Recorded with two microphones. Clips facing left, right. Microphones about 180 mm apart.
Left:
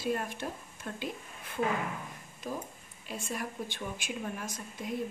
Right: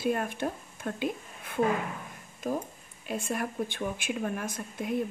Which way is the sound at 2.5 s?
50° right (ahead or behind).